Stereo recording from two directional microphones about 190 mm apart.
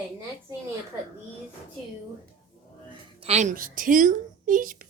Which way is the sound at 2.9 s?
30° right (ahead or behind).